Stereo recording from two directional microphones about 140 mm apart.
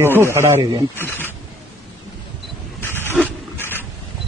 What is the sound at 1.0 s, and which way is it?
Speech, 15° left (ahead or behind).